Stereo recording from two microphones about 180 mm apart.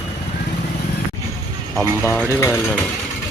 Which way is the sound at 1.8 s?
10° left (ahead or behind).